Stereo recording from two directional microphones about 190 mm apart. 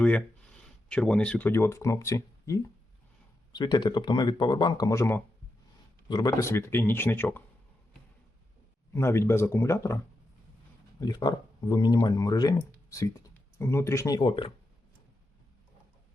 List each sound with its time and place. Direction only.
0.0 s speech: 5° left (ahead or behind)
8.9 s speech: 15° left (ahead or behind)
11.0 s speech: 20° left (ahead or behind)